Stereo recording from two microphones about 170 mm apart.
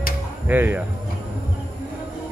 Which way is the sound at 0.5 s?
10° right (ahead or behind).